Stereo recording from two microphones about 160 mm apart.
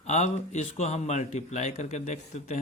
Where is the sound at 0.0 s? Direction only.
45° left (ahead or behind).